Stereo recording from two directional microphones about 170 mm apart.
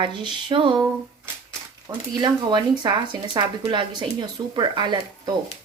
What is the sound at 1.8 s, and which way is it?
Speech, 25° right (ahead or behind).